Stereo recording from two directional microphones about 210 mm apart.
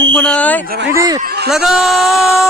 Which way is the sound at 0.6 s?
45° right (ahead or behind).